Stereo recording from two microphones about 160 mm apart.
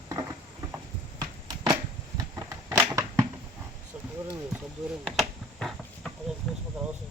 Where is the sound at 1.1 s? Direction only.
25° right (ahead or behind).